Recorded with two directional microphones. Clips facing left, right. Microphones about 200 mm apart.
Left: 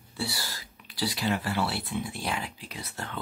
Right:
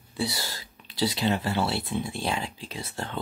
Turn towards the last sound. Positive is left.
turn(degrees=-30)  # may be behind; listen again after turning